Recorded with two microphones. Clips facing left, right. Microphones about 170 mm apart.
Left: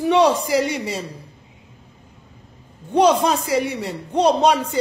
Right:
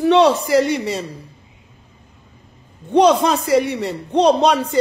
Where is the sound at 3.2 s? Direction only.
10° left (ahead or behind).